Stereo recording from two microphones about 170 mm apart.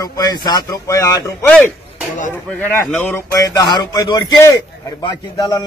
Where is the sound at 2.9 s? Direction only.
10° left (ahead or behind).